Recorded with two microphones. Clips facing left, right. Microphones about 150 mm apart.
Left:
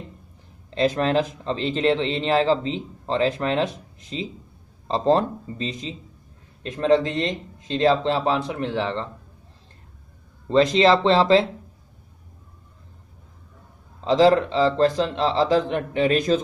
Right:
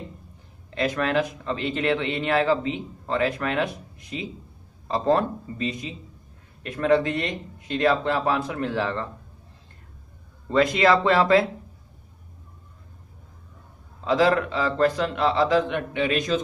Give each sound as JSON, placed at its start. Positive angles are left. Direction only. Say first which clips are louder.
{"t": 0.7, "sound": "a man's voice", "louder": "left 4 dB", "side_deg": 30}
{"t": 10.5, "sound": "a man's voice", "louder": "left 3 dB", "side_deg": 25}
{"t": 14.0, "sound": "a man's voice", "louder": "left 4 dB", "side_deg": 30}